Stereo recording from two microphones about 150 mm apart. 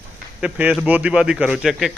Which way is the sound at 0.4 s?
10° right (ahead or behind).